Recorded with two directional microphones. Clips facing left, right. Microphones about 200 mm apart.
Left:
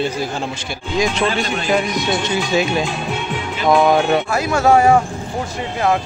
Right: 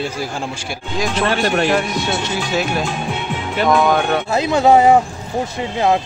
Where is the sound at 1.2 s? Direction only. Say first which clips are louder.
Right 3 dB; 70° right (ahead or behind).